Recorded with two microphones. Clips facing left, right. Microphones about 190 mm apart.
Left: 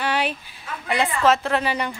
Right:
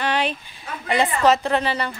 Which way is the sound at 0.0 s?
10° left (ahead or behind).